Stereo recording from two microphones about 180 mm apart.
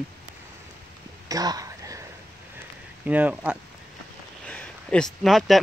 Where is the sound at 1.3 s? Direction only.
20° right (ahead or behind).